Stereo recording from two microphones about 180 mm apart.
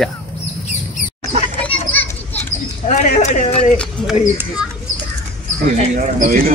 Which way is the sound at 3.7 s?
5° left (ahead or behind).